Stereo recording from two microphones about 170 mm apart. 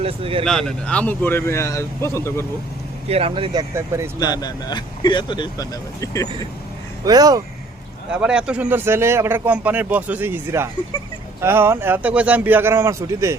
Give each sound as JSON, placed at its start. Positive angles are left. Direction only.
{"t": 0.0, "sound": "speech", "side_deg": -35}
{"t": 0.4, "sound": "a man's voice", "side_deg": 5}
{"t": 3.1, "sound": "speech", "side_deg": -35}
{"t": 4.2, "sound": "speech", "side_deg": 25}
{"t": 7.0, "sound": "speech", "side_deg": -20}
{"t": 8.1, "sound": "speech", "side_deg": -5}